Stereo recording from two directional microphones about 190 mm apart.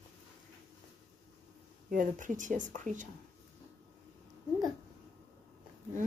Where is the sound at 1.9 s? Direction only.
45° right (ahead or behind).